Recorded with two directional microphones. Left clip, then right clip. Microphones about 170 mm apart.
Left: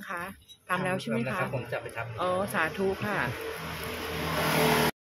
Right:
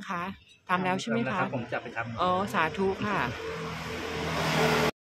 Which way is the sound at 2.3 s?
20° right (ahead or behind).